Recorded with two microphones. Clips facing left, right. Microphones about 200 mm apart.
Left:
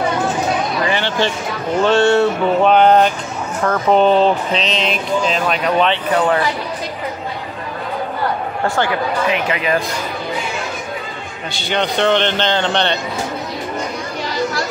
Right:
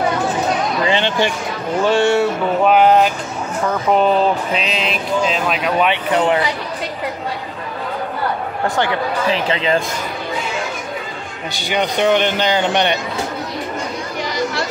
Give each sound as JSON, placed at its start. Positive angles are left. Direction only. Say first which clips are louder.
{"t": 0.8, "sound": "a sound", "louder": "right 3 dB", "side_deg": -20}
{"t": 1.8, "sound": "speech", "louder": "left 2 dB", "side_deg": -10}
{"t": 5.9, "sound": "speech", "louder": "even", "side_deg": -20}
{"t": 8.6, "sound": "speech", "louder": "even", "side_deg": -20}
{"t": 11.7, "sound": "speech", "louder": "even", "side_deg": -10}